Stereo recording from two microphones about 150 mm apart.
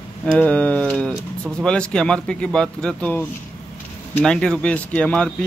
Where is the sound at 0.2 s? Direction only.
10° left (ahead or behind).